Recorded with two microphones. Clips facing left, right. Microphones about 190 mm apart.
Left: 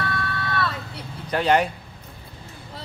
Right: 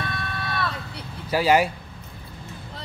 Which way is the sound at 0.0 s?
15° right (ahead or behind).